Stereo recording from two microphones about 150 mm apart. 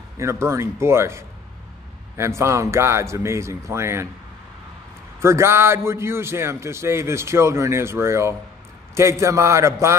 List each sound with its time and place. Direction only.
0.2 s a man's voice: 20° right (ahead or behind)
5.2 s a man's voice: 15° right (ahead or behind)